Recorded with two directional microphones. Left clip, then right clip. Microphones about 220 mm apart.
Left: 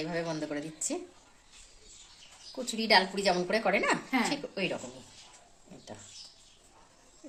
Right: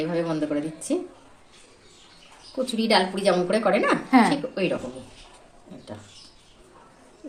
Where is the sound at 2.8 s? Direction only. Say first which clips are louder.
Right 4 dB; 35° left (ahead or behind).